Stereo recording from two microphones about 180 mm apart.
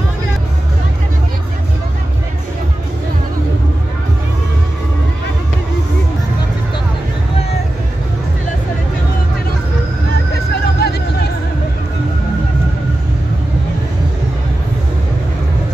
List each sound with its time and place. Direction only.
10.8 s vehicle: 65° left (ahead or behind)